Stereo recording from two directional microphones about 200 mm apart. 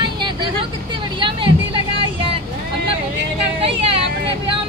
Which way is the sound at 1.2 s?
25° right (ahead or behind).